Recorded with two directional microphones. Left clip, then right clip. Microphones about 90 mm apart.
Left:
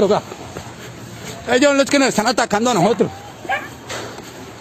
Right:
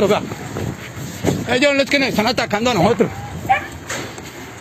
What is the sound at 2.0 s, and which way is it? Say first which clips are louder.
Speech: left 2 dB; 75° left (ahead or behind).